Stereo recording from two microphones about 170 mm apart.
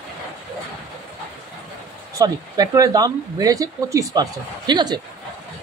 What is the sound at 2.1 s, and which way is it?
Speech, 20° right (ahead or behind).